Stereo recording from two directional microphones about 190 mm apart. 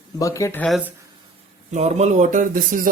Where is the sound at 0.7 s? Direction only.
5° right (ahead or behind).